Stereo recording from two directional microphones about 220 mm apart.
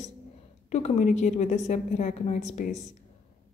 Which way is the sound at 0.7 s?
30° left (ahead or behind).